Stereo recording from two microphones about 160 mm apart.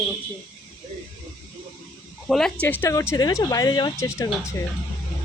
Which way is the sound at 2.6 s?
15° left (ahead or behind).